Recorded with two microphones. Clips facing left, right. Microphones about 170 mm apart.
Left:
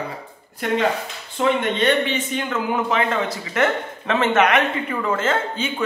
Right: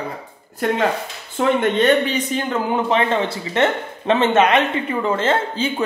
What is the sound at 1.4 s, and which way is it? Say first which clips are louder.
Speech: right 3 dB; 40° right (ahead or behind).